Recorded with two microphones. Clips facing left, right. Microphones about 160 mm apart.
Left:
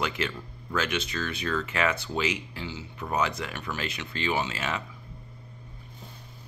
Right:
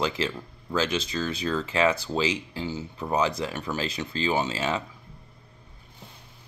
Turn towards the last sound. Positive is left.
turn(degrees=-30)  # may be behind; listen again after turning